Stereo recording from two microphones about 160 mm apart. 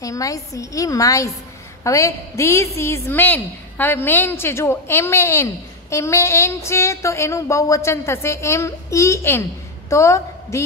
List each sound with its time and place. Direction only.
0.0 s a woman's voice: 20° left (ahead or behind)